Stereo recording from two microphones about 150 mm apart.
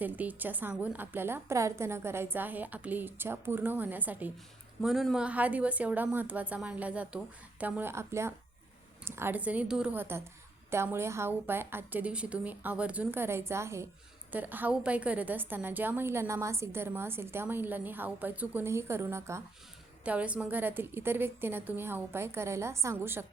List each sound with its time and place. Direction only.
0.0 s a woman's voice: 10° right (ahead or behind)